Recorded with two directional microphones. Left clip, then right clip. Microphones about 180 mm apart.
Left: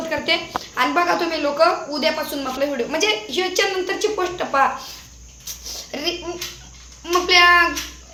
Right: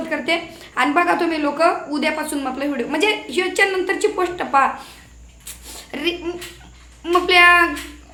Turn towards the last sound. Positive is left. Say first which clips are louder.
# right 1 dB
turn(degrees=-15)  # may be behind; listen again after turning